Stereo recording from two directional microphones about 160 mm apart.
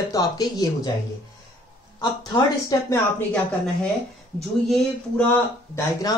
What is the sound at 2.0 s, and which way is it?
Speech, 25° left (ahead or behind).